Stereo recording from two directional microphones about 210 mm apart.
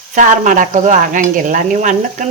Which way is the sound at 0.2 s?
40° right (ahead or behind).